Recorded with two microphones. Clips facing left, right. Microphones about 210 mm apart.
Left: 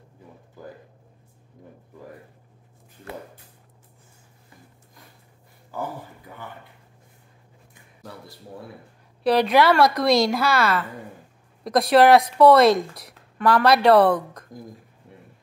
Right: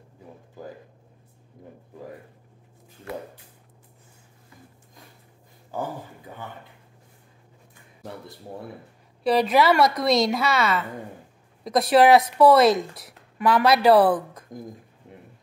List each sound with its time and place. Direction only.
9.2 s a woman's voice: centre (ahead or behind)